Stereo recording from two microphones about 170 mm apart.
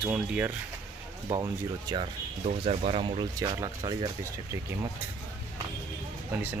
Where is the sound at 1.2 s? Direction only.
20° right (ahead or behind).